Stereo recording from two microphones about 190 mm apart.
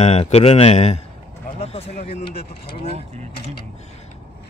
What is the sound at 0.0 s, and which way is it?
Speech, 35° left (ahead or behind).